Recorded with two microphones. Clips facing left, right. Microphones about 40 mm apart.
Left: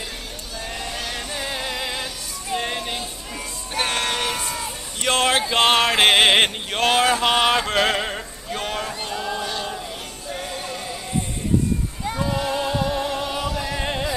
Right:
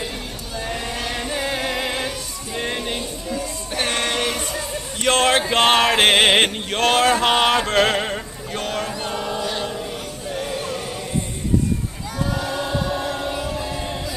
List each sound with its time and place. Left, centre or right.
0.6 s choir: centre
2.6 s music: centre
5.0 s a sound: centre
9.1 s chant: right
10.4 s music: right
12.4 s choir: centre
13.2 s music: left